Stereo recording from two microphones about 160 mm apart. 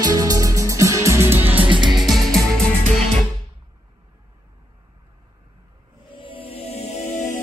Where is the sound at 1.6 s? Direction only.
30° right (ahead or behind).